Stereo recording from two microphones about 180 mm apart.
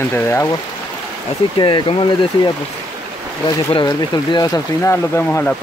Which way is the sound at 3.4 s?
25° left (ahead or behind).